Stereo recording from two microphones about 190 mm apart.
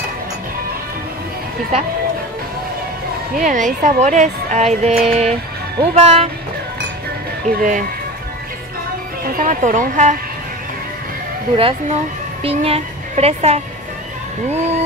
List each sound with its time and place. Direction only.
3.4 s speech: 40° right (ahead or behind)
7.5 s speech: 45° right (ahead or behind)
9.2 s speech: 45° right (ahead or behind)
11.5 s speech: 30° right (ahead or behind)